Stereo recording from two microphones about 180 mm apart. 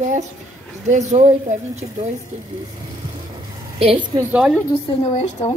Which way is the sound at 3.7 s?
30° right (ahead or behind).